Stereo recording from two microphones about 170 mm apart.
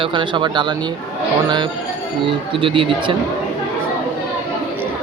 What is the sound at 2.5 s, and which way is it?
Speech, 30° right (ahead or behind).